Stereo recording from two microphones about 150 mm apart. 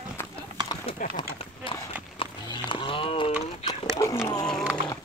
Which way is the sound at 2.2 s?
35° left (ahead or behind).